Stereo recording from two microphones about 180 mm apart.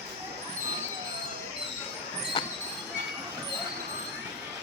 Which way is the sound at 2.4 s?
25° left (ahead or behind).